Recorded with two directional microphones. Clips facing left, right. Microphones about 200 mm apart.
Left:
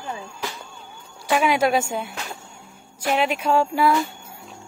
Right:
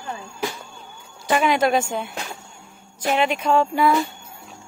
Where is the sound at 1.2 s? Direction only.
5° left (ahead or behind).